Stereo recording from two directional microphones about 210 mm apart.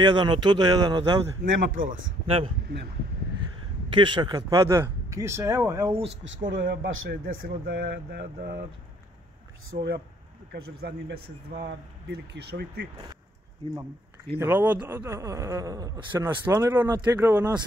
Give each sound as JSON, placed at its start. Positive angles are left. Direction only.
{"t": 0.0, "sound": "speech", "side_deg": -20}
{"t": 1.4, "sound": "speech", "side_deg": -40}
{"t": 3.9, "sound": "speech", "side_deg": -20}
{"t": 6.0, "sound": "speech", "side_deg": -60}
{"t": 9.7, "sound": "speech", "side_deg": -50}
{"t": 14.4, "sound": "speech", "side_deg": -10}